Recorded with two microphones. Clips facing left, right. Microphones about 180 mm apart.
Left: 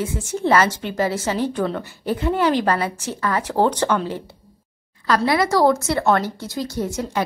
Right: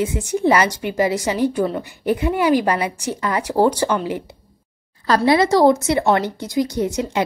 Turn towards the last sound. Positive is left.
turn(degrees=-20)  # may be behind; listen again after turning